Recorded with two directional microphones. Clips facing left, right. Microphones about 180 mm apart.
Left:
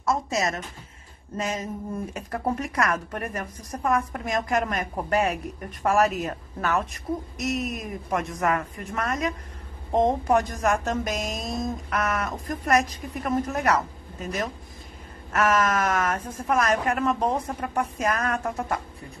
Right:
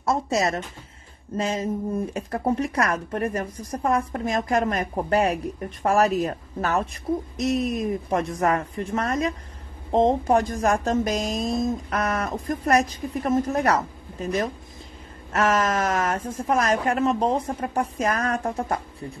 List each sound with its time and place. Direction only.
0.0 s a woman's voice: 35° right (ahead or behind)